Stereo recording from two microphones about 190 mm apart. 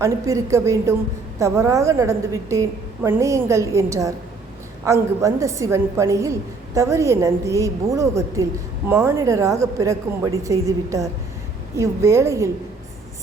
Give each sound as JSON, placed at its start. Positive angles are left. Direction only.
{"t": 0.0, "sound": "a woman's voice", "side_deg": -15}